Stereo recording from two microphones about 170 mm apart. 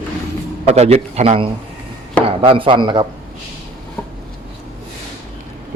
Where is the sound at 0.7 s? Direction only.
35° right (ahead or behind).